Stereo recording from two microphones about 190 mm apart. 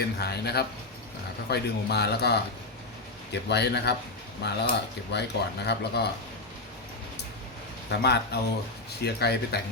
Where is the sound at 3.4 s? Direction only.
60° left (ahead or behind).